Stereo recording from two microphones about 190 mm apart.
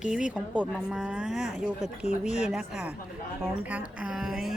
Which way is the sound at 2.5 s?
5° right (ahead or behind).